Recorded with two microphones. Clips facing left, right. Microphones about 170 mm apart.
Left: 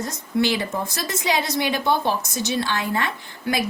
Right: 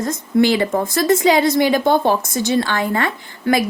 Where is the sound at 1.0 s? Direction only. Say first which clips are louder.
Right 11 dB; 50° right (ahead or behind).